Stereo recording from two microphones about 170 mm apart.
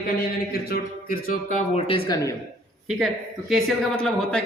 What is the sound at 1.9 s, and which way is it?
Speech, 25° left (ahead or behind).